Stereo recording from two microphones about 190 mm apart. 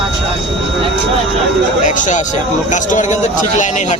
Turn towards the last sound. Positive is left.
turn(degrees=40)  # may be behind; listen again after turning